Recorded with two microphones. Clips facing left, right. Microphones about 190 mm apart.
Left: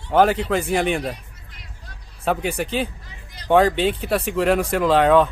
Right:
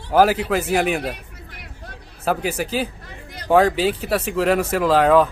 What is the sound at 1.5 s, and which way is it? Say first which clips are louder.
Vehicle: right 6 dB; 60° right (ahead or behind).